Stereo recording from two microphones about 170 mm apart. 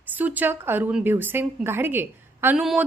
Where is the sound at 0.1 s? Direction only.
10° right (ahead or behind).